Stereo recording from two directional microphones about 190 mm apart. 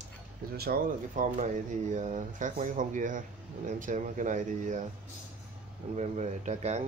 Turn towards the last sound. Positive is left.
turn(degrees=-35)  # may be behind; listen again after turning